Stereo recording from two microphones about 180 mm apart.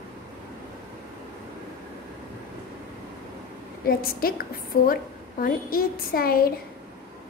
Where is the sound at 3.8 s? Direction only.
55° left (ahead or behind).